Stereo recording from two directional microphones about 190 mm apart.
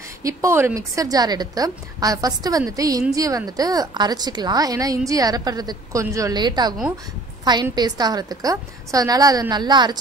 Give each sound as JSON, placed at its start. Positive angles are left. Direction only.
{"t": 0.2, "sound": "a woman's voice", "side_deg": -15}